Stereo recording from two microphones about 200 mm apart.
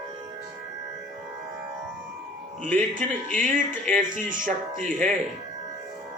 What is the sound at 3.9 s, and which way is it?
Speech, 40° right (ahead or behind).